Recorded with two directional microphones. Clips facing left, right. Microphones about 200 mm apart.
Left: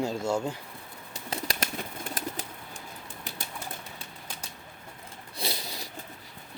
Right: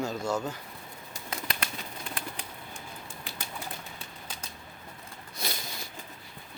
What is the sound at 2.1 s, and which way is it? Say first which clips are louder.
Bird: left 6 dB; 45° left (ahead or behind).